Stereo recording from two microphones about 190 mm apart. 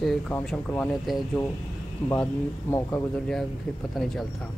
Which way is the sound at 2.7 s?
10° left (ahead or behind).